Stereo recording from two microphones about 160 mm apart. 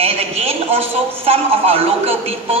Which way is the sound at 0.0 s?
40° right (ahead or behind).